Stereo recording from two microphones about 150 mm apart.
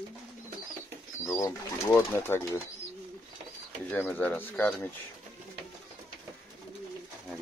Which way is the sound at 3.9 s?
10° left (ahead or behind).